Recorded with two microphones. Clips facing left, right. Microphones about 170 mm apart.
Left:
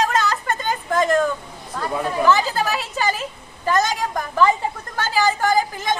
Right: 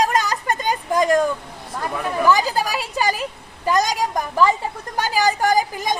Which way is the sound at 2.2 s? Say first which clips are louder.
Right 1 dB; 10° right (ahead or behind).